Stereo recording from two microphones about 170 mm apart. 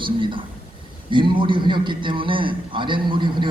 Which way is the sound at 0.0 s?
30° right (ahead or behind).